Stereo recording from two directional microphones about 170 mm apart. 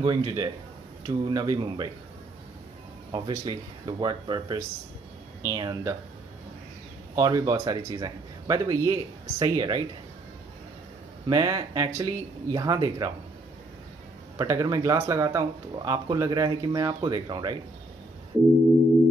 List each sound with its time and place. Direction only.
0.0 s speech: 25° right (ahead or behind)
3.1 s speech: 25° right (ahead or behind)
7.2 s speech: 20° right (ahead or behind)
11.2 s speech: 20° right (ahead or behind)
14.4 s speech: 20° right (ahead or behind)